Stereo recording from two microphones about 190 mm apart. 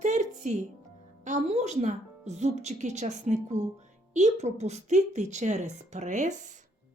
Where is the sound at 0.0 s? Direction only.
40° right (ahead or behind).